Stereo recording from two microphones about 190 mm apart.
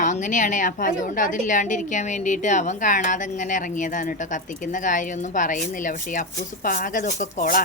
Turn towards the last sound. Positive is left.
turn(degrees=40)  # may be behind; listen again after turning